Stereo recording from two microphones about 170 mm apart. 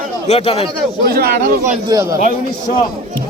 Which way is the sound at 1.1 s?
65° right (ahead or behind).